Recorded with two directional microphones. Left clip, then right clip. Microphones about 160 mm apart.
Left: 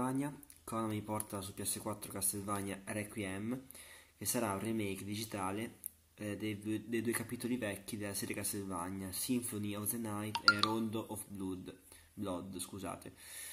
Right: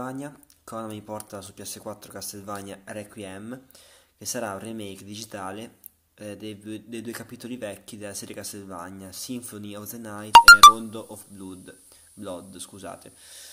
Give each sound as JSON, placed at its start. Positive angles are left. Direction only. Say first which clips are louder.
{"t": 0.0, "sound": "speech", "louder": "right 4 dB", "side_deg": 5}